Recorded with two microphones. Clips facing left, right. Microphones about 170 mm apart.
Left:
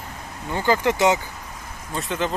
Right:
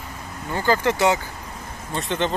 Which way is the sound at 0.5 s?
15° left (ahead or behind).